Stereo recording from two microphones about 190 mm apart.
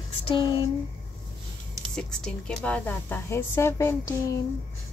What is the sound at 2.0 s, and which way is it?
A woman's voice, 5° left (ahead or behind).